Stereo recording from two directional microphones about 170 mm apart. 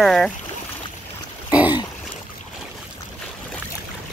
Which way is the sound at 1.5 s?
10° right (ahead or behind).